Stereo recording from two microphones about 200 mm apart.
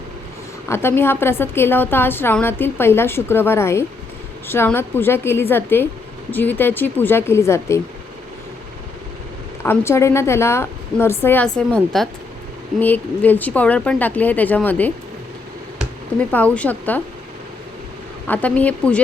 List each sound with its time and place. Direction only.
0.7 s a woman's voice: 10° left (ahead or behind)
9.6 s a woman's voice: 15° left (ahead or behind)
16.3 s a woman's voice: 10° left (ahead or behind)
18.3 s a woman's voice: 5° left (ahead or behind)